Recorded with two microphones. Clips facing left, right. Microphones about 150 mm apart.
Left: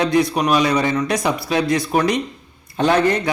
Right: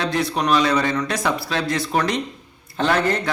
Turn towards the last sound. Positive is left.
turn(degrees=15)  # may be behind; listen again after turning